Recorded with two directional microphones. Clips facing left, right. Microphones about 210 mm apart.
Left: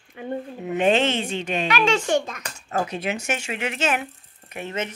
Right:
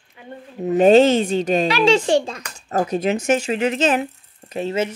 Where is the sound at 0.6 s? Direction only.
40° right (ahead or behind).